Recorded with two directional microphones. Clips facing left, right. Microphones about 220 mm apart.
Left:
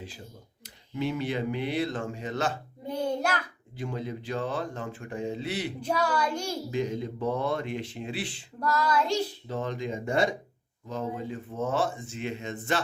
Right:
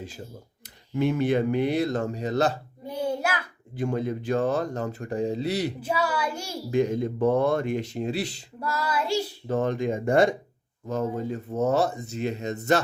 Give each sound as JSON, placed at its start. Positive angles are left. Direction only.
{"t": 0.9, "sound": "speech", "side_deg": -50}
{"t": 2.9, "sound": "child singing", "side_deg": -5}
{"t": 3.8, "sound": "speech", "side_deg": -50}
{"t": 5.8, "sound": "a child's voice", "side_deg": -5}
{"t": 6.7, "sound": "speech", "side_deg": -55}
{"t": 8.5, "sound": "a child's voice", "side_deg": -5}
{"t": 9.5, "sound": "speech", "side_deg": -50}